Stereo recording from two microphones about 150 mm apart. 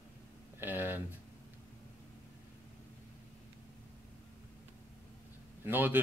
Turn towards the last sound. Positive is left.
turn(degrees=-10)  # may be behind; listen again after turning